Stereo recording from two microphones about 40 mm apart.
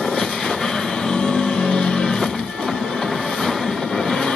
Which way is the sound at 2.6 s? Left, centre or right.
Left.